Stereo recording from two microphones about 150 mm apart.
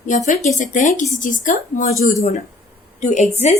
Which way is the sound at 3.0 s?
50° left (ahead or behind).